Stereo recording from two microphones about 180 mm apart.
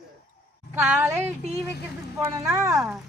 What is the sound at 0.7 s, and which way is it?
A woman's voice, 10° right (ahead or behind).